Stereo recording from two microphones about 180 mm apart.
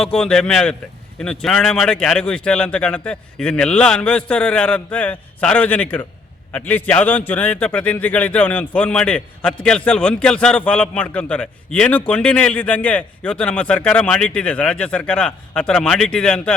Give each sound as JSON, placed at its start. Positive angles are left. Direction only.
{"t": 0.0, "sound": "a man's voice", "side_deg": 5}